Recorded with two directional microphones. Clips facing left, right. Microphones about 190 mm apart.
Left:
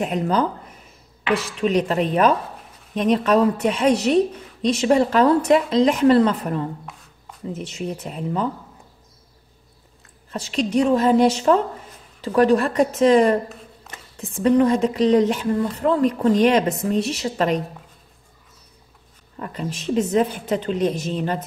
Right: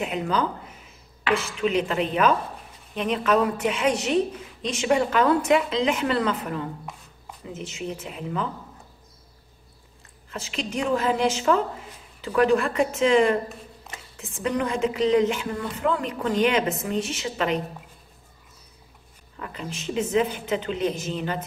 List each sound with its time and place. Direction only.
0.0 s a woman's voice: 45° left (ahead or behind)
10.3 s a woman's voice: 35° left (ahead or behind)
19.3 s a woman's voice: 40° left (ahead or behind)